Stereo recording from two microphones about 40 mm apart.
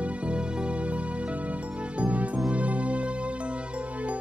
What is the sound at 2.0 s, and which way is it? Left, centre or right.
Music, right.